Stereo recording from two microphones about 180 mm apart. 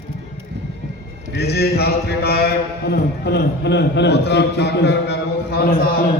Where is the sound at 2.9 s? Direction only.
65° left (ahead or behind).